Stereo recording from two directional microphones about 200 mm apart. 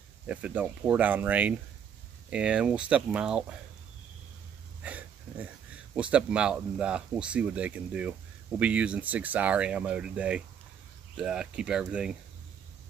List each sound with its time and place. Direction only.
0.3 s speech: 5° right (ahead or behind)
4.8 s a sound: 5° right (ahead or behind)
5.9 s speech: 5° right (ahead or behind)